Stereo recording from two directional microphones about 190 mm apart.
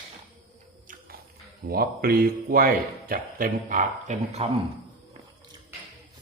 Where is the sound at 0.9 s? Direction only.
50° right (ahead or behind).